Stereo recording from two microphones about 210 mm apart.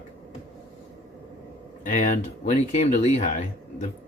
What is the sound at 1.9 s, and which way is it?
Speech, 35° left (ahead or behind).